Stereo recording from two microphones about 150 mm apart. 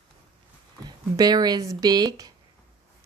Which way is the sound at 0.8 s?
25° right (ahead or behind).